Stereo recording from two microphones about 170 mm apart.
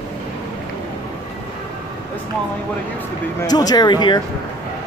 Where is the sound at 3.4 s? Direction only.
25° left (ahead or behind).